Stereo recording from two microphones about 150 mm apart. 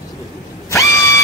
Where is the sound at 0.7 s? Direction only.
20° left (ahead or behind).